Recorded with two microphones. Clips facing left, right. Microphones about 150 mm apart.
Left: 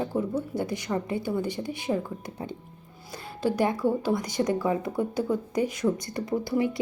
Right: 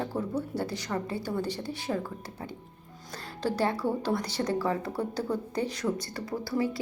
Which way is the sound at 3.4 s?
15° left (ahead or behind).